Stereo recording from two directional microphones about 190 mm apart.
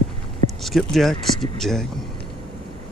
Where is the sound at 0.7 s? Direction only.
Centre (ahead or behind).